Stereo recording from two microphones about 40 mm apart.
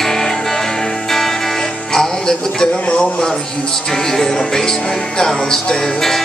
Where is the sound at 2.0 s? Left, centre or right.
Centre.